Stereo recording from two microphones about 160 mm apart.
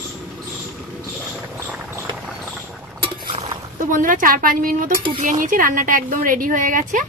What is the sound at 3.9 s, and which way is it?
Speech, 55° right (ahead or behind).